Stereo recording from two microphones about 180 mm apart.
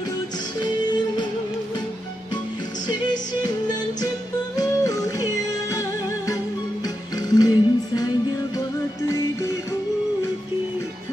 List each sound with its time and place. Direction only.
4.6 s music: 20° left (ahead or behind)
9.1 s music: 15° left (ahead or behind)